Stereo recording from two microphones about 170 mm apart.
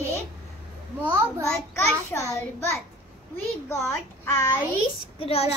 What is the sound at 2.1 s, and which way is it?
Speech, 15° left (ahead or behind).